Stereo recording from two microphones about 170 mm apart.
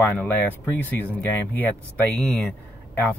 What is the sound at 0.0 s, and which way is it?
Speech, 10° left (ahead or behind).